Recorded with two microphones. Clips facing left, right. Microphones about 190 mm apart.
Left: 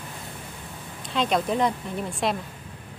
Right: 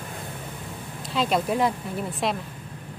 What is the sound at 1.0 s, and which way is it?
A woman's voice, centre (ahead or behind).